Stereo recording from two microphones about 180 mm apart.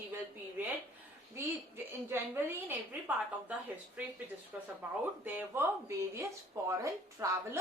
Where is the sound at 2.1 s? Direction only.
10° right (ahead or behind).